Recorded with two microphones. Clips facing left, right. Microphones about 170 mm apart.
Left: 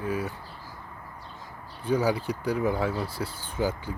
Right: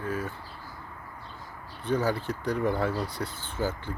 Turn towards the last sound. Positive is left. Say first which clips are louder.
# left 2 dB
turn(degrees=10)  # may be behind; listen again after turning